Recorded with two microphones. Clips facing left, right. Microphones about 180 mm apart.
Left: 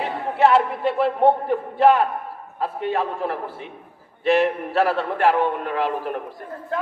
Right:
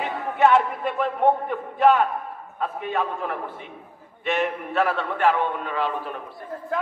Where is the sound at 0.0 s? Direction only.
35° left (ahead or behind).